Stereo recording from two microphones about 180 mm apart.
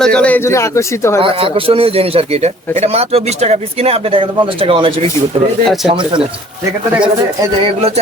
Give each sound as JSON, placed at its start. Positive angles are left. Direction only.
{"t": 0.0, "sound": "a man's voice", "side_deg": 5}
{"t": 1.2, "sound": "speech", "side_deg": -30}